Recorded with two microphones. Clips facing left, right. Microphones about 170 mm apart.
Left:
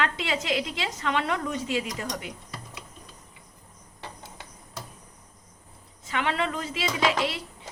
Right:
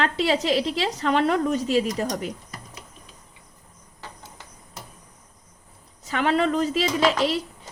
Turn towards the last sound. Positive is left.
turn(degrees=-40)  # may be behind; listen again after turning